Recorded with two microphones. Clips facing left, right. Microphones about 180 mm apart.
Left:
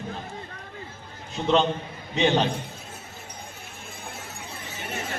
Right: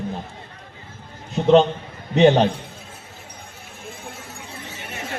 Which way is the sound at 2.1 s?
45° right (ahead or behind).